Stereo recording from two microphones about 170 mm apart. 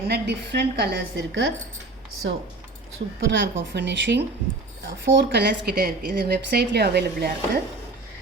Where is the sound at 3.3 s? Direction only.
90° right.